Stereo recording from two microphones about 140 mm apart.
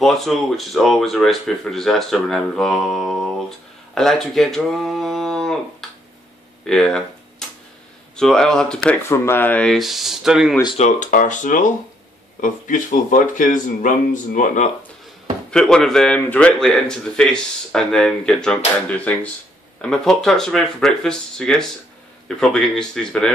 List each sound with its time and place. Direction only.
0.0 s speech: centre (ahead or behind)
6.6 s tick-tock: 5° left (ahead or behind)
8.2 s a man's voice: 5° left (ahead or behind)
9.1 s a man's voice: 15° left (ahead or behind); by 10.5 s 5° right (ahead or behind)
10.8 s speech: 60° left (ahead or behind)
15.5 s a man's voice: 5° left (ahead or behind)
19.8 s a man's voice: 5° left (ahead or behind)